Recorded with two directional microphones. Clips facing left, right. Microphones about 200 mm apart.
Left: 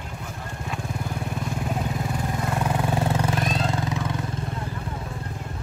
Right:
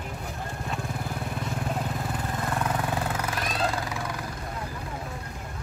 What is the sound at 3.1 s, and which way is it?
Vehicle, 25° left (ahead or behind).